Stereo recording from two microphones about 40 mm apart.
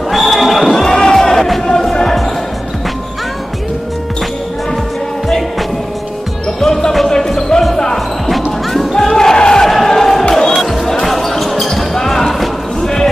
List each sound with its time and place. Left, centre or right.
0.1 s basketball bounce: centre
0.8 s basketball bounce: centre
6.6 s basketball bounce: centre
8.5 s music: centre
9.0 s a sound: centre
9.4 s crowd: centre
9.7 s a sound: centre
10.6 s basketball bounce: centre